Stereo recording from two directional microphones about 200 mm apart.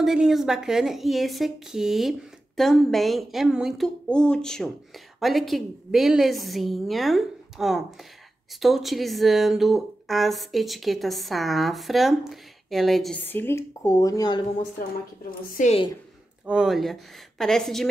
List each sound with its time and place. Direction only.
0.0 s a woman's voice: centre (ahead or behind); by 14.4 s 20° left (ahead or behind)
15.5 s a woman's voice: 35° left (ahead or behind)
16.4 s a woman's voice: 5° right (ahead or behind)